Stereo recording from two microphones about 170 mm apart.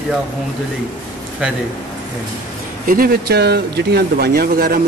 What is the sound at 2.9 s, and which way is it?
Speech, 65° right (ahead or behind).